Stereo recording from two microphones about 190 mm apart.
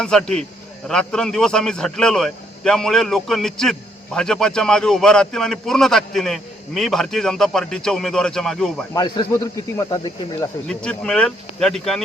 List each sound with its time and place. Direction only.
0.0 s a man's voice: 5° left (ahead or behind)
8.9 s speech: 20° left (ahead or behind)
10.7 s a man's voice: 5° left (ahead or behind)